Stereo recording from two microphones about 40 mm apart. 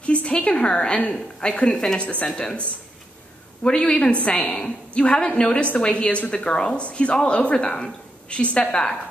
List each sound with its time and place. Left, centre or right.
0.0 s a woman's voice: left
2.0 s a woman's voice: left
3.6 s a woman's voice: left
4.1 s a woman's voice: left